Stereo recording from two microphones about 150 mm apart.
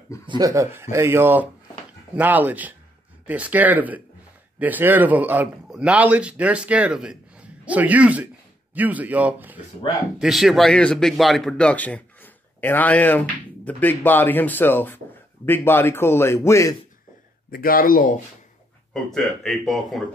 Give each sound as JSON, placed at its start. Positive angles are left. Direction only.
{"t": 0.4, "sound": "a man's voice", "side_deg": -20}
{"t": 17.5, "sound": "speech", "side_deg": 75}
{"t": 19.0, "sound": "a man's voice", "side_deg": 5}